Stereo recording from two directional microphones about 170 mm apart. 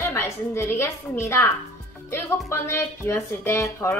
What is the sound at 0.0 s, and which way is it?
Speech, 15° left (ahead or behind).